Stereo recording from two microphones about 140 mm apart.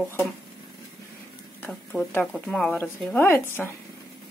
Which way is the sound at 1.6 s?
10° left (ahead or behind).